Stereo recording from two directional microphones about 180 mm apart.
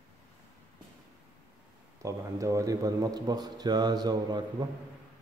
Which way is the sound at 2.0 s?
20° right (ahead or behind).